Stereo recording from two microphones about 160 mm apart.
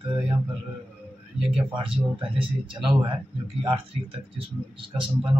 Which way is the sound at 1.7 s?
35° right (ahead or behind).